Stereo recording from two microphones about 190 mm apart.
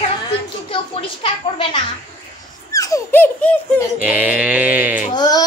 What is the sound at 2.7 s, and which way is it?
Laughter, 15° left (ahead or behind).